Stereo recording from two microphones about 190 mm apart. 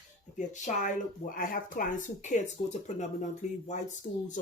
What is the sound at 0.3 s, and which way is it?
Speech, 40° left (ahead or behind).